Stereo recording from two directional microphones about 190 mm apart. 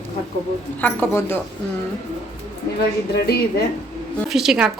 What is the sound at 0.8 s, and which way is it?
Speech, 10° left (ahead or behind).